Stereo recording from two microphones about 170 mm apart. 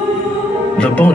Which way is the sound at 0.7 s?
5° left (ahead or behind).